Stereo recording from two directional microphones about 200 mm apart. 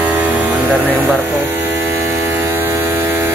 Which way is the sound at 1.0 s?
10° right (ahead or behind).